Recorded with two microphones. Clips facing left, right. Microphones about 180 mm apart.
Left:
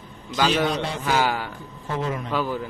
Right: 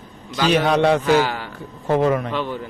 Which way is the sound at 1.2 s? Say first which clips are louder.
Right 1 dB; 10° left (ahead or behind).